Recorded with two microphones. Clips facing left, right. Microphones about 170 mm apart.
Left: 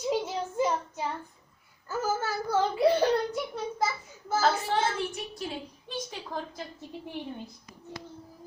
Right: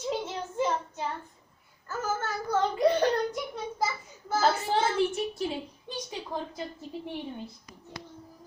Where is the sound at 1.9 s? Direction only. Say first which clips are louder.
Left 2 dB; 10° left (ahead or behind).